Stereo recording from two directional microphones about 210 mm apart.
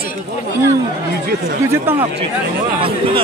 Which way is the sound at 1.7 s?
10° right (ahead or behind).